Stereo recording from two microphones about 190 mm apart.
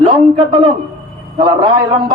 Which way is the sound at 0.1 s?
25° right (ahead or behind).